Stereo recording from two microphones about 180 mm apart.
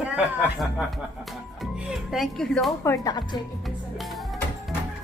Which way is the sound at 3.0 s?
25° left (ahead or behind).